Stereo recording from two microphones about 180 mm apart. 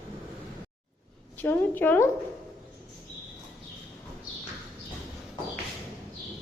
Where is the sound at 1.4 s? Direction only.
10° left (ahead or behind).